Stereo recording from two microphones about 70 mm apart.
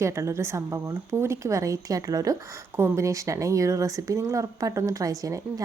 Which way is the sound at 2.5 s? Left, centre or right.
Right.